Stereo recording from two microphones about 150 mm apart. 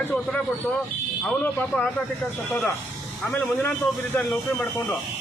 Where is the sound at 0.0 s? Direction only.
10° left (ahead or behind).